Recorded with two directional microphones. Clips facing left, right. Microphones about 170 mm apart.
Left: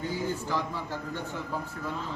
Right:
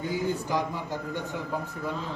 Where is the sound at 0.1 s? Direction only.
15° right (ahead or behind).